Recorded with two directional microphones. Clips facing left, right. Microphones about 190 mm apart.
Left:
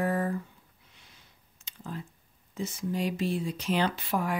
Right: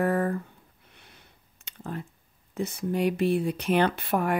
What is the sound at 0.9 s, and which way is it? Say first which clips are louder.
Sniff: right 5 dB; 60° right (ahead or behind).